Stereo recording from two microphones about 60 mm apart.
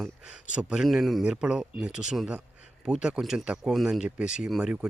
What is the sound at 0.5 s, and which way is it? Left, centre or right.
Speech, centre.